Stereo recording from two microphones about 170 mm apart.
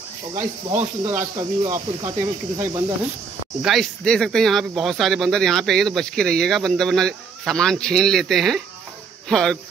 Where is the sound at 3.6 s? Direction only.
Centre (ahead or behind).